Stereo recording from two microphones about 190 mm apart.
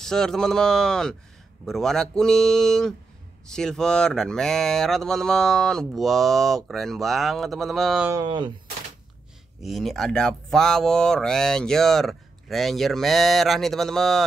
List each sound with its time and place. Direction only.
0.0 s speech: 5° left (ahead or behind)
8.1 s speech: 25° right (ahead or behind)
9.6 s speech: centre (ahead or behind)